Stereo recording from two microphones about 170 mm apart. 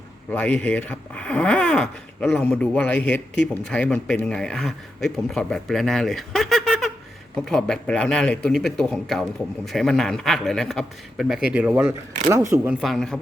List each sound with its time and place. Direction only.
0.3 s speech: 5° left (ahead or behind)